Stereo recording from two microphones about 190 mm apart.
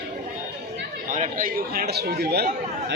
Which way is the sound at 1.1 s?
45° right (ahead or behind).